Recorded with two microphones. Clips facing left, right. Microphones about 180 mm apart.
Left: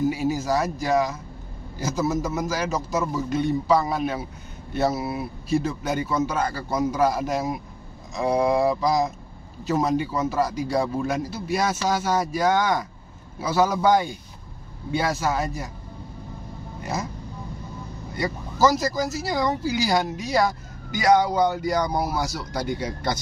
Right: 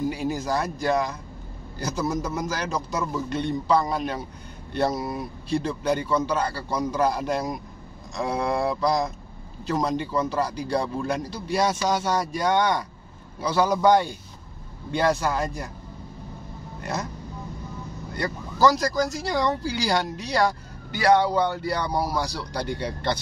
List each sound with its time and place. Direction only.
0.1 s a man's voice: 5° left (ahead or behind)
16.8 s a man's voice: 5° left (ahead or behind)
18.2 s a man's voice: 5° left (ahead or behind)
21.5 s speech: 10° left (ahead or behind)